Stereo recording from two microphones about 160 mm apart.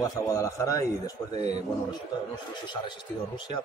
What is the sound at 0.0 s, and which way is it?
A man's voice, 20° left (ahead or behind).